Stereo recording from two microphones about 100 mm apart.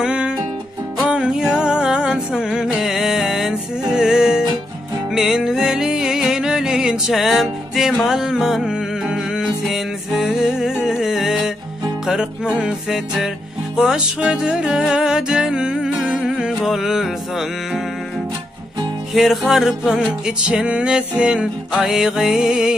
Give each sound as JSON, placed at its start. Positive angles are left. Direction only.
{"t": 0.0, "sound": "music", "side_deg": -10}
{"t": 19.1, "sound": "music", "side_deg": 0}